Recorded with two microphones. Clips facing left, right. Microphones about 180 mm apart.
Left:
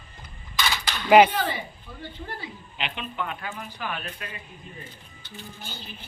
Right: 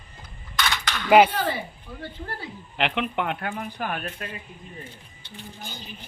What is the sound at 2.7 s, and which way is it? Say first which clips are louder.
Speech: right 7 dB; 75° right (ahead or behind).